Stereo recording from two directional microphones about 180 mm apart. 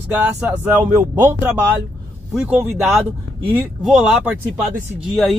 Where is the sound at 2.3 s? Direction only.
10° right (ahead or behind).